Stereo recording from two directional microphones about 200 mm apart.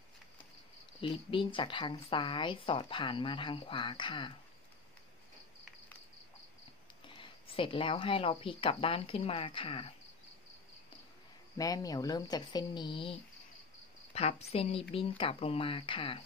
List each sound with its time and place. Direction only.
1.0 s speech: 25° left (ahead or behind)
7.1 s speech: 25° left (ahead or behind)
11.5 s speech: 20° left (ahead or behind)